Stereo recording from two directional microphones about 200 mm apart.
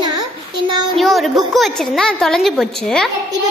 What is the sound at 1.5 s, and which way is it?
A woman's voice, centre (ahead or behind).